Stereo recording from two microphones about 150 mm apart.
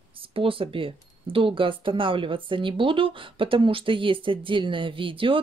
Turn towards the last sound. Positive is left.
turn(degrees=-35)  # may be behind; listen again after turning